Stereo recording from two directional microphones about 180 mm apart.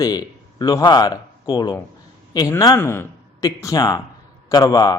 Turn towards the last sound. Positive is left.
turn(degrees=20)  # may be behind; listen again after turning